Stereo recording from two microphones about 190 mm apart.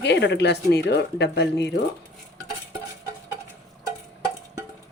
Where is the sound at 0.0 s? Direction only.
65° left (ahead or behind).